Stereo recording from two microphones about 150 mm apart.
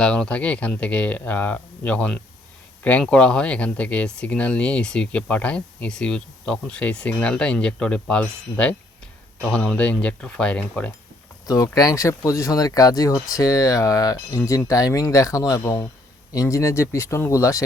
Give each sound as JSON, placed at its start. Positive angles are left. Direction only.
{"t": 0.0, "sound": "speech", "side_deg": 5}
{"t": 11.4, "sound": "speech", "side_deg": 25}